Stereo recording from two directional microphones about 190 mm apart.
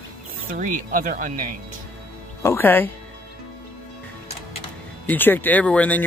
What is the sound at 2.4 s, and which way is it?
Speech, 15° left (ahead or behind).